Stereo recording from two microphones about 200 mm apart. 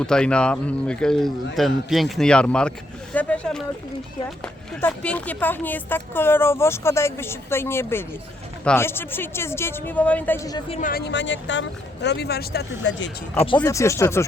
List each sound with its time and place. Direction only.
0.0 s speech: 5° left (ahead or behind)
4.7 s speech: 5° left (ahead or behind)
10.7 s speech: 40° left (ahead or behind); by 13.1 s 60° left (ahead or behind)
13.3 s speech: 30° left (ahead or behind)
13.6 s speech: 15° left (ahead or behind)